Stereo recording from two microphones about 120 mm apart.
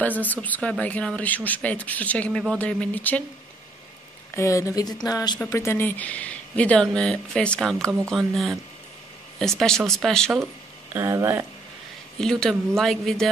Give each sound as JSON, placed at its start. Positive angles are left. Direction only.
{"t": 0.2, "sound": "speech", "side_deg": 15}
{"t": 4.4, "sound": "speech", "side_deg": 25}
{"t": 5.4, "sound": "speech", "side_deg": 20}
{"t": 10.9, "sound": "speech", "side_deg": -20}
{"t": 12.2, "sound": "speech", "side_deg": 5}